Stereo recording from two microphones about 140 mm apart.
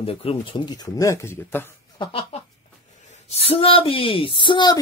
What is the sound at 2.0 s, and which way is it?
Speech, 40° left (ahead or behind).